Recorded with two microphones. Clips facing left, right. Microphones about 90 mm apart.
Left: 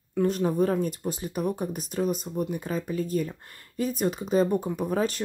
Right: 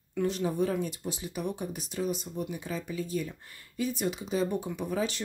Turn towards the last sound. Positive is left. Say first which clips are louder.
# left 5 dB
turn(degrees=45)  # may be behind; listen again after turning